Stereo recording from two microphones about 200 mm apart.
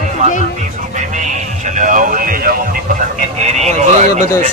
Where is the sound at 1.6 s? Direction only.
40° right (ahead or behind).